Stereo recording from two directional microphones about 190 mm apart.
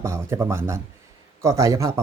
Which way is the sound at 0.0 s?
15° right (ahead or behind).